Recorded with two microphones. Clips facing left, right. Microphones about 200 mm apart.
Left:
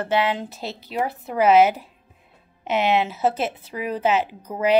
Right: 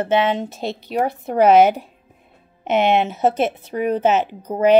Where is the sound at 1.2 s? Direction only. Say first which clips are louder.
Right 3 dB; 55° right (ahead or behind).